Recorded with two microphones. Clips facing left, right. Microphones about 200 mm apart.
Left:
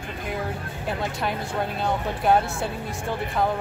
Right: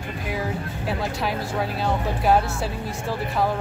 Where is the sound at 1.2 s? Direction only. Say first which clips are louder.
Right 1 dB; centre (ahead or behind).